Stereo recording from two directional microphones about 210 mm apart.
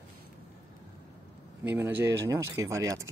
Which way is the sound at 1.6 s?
10° right (ahead or behind).